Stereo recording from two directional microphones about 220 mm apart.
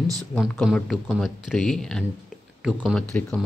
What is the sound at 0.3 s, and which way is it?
Speech, centre (ahead or behind).